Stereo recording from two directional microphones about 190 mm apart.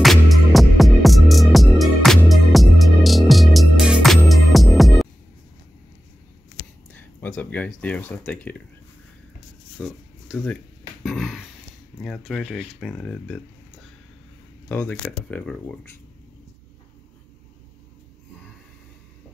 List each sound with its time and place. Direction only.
0.0 s music: centre (ahead or behind)
6.9 s speech: 10° left (ahead or behind)
9.8 s a sound: 5° left (ahead or behind)
12.0 s speech: centre (ahead or behind)
14.7 s speech: 10° left (ahead or behind)